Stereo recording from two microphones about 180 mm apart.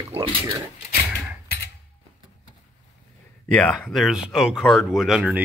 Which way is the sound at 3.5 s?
5° left (ahead or behind).